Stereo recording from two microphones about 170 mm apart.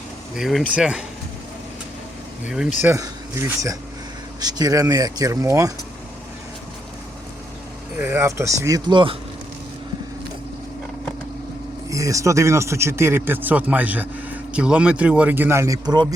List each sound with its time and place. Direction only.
0.3 s speech: centre (ahead or behind)
2.8 s speech: 15° right (ahead or behind)
7.9 s speech: 15° right (ahead or behind)
11.9 s speech: 20° right (ahead or behind)